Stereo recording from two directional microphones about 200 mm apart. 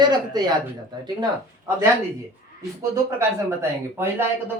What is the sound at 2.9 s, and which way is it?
Speech, 15° right (ahead or behind).